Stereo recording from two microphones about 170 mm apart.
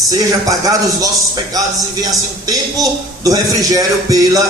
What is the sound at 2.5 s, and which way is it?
A man's voice, 20° right (ahead or behind).